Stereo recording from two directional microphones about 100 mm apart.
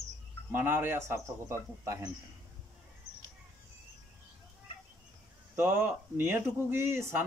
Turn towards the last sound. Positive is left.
turn(degrees=-25)  # may be behind; listen again after turning